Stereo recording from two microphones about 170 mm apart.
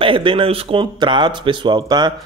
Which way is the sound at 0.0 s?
30° right (ahead or behind).